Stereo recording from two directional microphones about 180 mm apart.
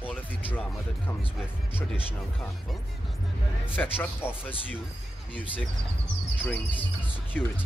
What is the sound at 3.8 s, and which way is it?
Speech, 10° left (ahead or behind).